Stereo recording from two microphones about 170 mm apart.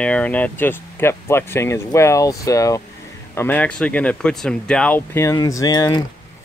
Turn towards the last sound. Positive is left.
turn(degrees=20)  # may be behind; listen again after turning